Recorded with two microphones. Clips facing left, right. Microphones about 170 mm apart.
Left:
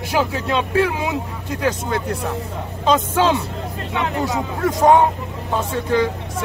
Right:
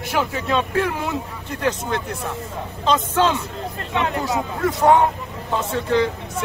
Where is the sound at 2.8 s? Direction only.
10° left (ahead or behind).